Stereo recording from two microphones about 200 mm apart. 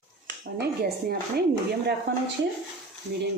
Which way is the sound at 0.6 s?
50° right (ahead or behind).